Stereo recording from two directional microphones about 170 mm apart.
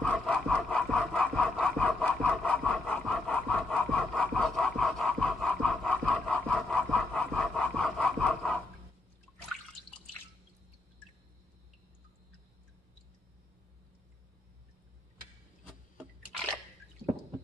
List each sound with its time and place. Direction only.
0.0 s sawing: 5° left (ahead or behind)